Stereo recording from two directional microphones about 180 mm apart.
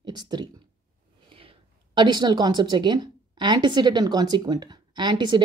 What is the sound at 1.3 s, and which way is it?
A woman's voice, 30° right (ahead or behind).